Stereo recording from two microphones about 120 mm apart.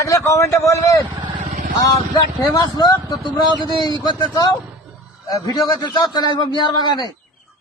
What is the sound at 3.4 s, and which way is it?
Speech, 40° right (ahead or behind).